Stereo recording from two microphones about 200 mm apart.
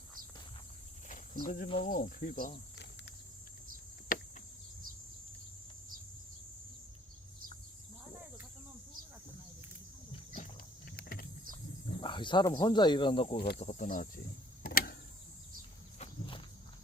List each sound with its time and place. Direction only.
1.0 s cricket: 40° left (ahead or behind)
10.3 s boat: 45° left (ahead or behind)
11.9 s speech: 25° left (ahead or behind)
13.6 s speech: 35° left (ahead or behind)
14.6 s power windows: 50° left (ahead or behind)
16.0 s walk: 25° left (ahead or behind)